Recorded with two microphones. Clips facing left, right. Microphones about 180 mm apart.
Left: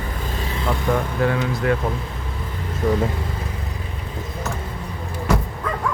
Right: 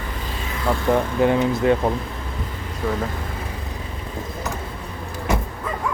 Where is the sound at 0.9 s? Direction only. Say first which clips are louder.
Right 4 dB; 20° right (ahead or behind).